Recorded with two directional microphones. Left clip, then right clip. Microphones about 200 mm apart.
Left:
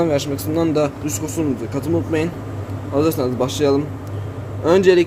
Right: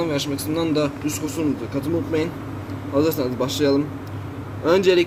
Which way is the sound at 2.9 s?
30° left (ahead or behind).